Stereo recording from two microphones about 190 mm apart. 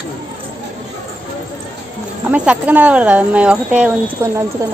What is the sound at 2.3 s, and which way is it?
Speech, 5° right (ahead or behind).